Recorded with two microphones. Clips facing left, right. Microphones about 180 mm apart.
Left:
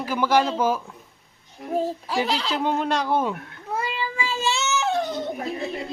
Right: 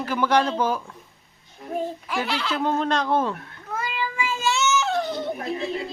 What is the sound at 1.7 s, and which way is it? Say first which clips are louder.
Speech: left 3 dB; 35° left (ahead or behind).